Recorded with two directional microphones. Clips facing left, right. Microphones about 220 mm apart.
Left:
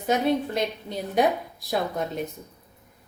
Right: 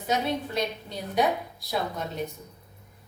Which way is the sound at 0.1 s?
50° left (ahead or behind).